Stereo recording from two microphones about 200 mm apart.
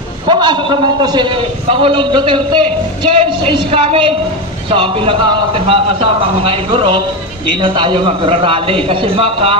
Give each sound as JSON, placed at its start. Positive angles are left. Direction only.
{"t": 0.3, "sound": "a man's voice", "side_deg": -25}